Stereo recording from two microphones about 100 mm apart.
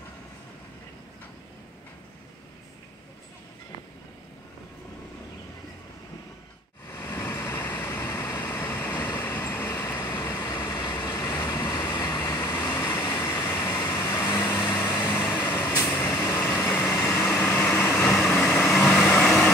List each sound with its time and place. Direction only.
6.9 s vehicle: 25° left (ahead or behind)
10.5 s vehicle: 40° left (ahead or behind); by 19.5 s 20° left (ahead or behind)